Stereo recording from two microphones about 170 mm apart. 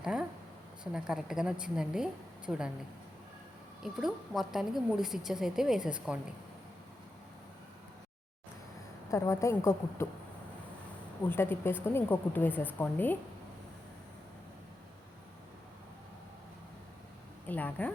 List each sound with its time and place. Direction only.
0.0 s a woman's voice: 5° right (ahead or behind)
3.8 s a woman's voice: 5° right (ahead or behind)
9.0 s a woman's voice: 15° left (ahead or behind)
11.3 s a woman's voice: 15° left (ahead or behind)
17.4 s a woman's voice: 10° left (ahead or behind)